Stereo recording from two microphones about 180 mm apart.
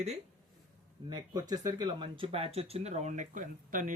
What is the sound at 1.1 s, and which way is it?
Speech, 20° right (ahead or behind).